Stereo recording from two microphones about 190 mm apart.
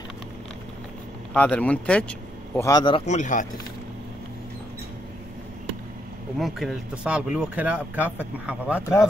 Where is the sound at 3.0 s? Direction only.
40° left (ahead or behind).